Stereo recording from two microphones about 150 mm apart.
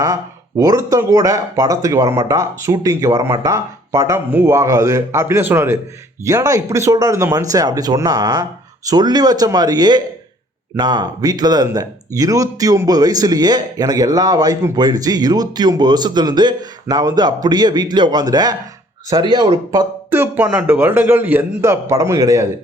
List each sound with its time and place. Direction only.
0.0 s speech: 20° right (ahead or behind)